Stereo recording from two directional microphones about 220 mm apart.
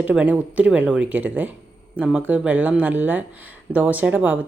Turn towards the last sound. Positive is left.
turn(degrees=-5)  # may be behind; listen again after turning